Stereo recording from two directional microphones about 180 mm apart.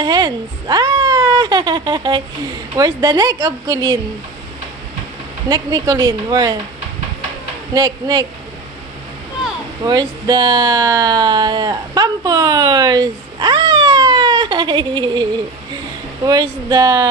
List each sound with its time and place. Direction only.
0.0 s a woman's voice: 20° right (ahead or behind)
5.5 s speech: 20° right (ahead or behind)
7.7 s speech: 20° right (ahead or behind)
9.8 s speech: 25° right (ahead or behind)
16.3 s speech: 20° right (ahead or behind)